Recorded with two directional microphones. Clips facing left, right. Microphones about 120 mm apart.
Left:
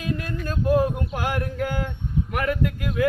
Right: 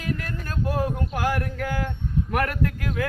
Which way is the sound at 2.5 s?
15° left (ahead or behind).